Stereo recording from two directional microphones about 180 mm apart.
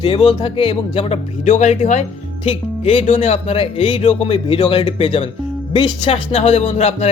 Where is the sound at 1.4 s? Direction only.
40° left (ahead or behind).